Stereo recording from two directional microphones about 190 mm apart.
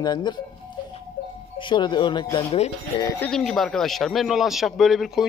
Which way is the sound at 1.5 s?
25° left (ahead or behind).